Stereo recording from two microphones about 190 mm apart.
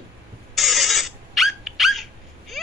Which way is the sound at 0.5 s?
Centre (ahead or behind).